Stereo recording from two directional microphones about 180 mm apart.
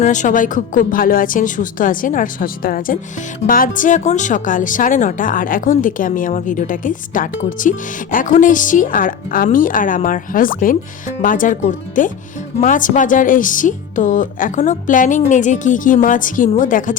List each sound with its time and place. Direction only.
0.0 s speech: 45° left (ahead or behind)